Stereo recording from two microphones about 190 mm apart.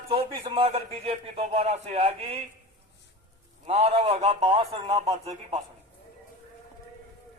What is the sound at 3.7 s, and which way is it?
A man's voice, 30° right (ahead or behind).